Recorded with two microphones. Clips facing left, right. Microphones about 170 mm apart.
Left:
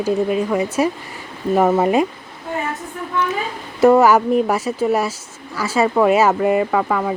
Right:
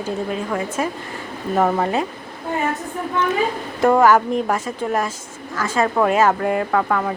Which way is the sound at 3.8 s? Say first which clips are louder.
Left 3 dB; 5° left (ahead or behind).